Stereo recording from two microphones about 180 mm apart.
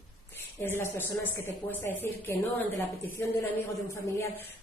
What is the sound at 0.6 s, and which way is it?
A woman's voice, 10° left (ahead or behind).